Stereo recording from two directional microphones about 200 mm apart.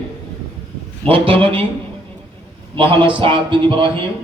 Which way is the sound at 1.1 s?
25° right (ahead or behind).